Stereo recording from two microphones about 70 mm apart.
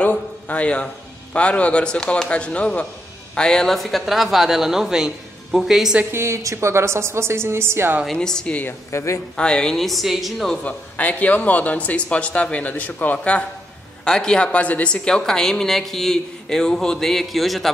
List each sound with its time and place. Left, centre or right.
0.0 s a sound: centre
1.3 s speech: centre
6.1 s a woman's voice: right
8.1 s speech: centre
8.9 s speech: left
9.4 s speech: centre
10.5 s speech: centre